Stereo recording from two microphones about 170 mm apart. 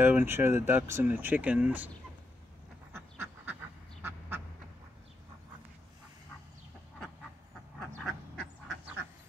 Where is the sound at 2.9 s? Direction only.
10° right (ahead or behind).